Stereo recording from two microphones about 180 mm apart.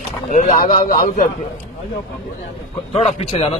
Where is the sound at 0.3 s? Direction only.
45° left (ahead or behind).